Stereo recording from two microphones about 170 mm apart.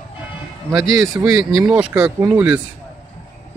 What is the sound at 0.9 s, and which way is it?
Speech, centre (ahead or behind).